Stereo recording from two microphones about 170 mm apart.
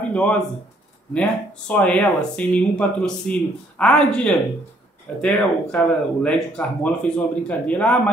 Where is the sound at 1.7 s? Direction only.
10° left (ahead or behind).